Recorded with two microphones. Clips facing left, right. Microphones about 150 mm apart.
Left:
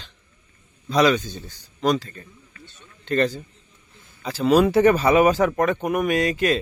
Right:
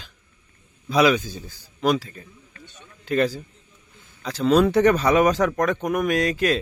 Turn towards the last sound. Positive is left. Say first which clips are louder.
# left 1 dB
turn(degrees=0)  # may be behind; listen again after turning